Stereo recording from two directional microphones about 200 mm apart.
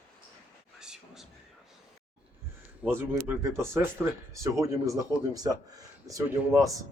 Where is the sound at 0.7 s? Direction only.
5° right (ahead or behind).